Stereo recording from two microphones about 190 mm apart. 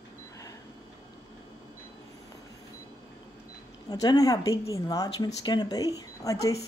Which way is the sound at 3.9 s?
20° left (ahead or behind).